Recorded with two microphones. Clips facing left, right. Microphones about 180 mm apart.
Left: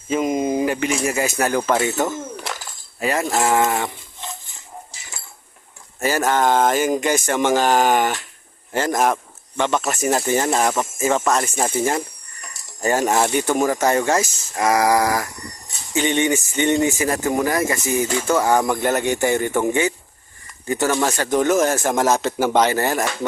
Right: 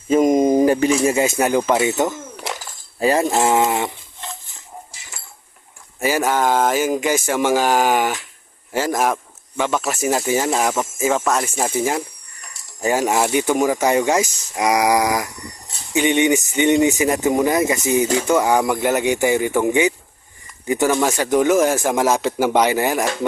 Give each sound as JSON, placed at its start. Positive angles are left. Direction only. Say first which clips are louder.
{"t": 0.1, "sound": "a sound", "louder": "right 6 dB", "side_deg": -45}
{"t": 1.0, "sound": "speech", "louder": "right 4 dB", "side_deg": -25}
{"t": 3.0, "sound": "speech", "louder": "right 4 dB", "side_deg": -30}
{"t": 6.0, "sound": "speech", "louder": "even", "side_deg": -10}